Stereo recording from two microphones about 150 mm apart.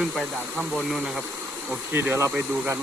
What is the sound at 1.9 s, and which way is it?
Speech, 15° right (ahead or behind).